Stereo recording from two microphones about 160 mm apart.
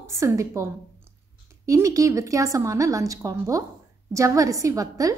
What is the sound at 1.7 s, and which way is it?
A woman's voice, 20° right (ahead or behind).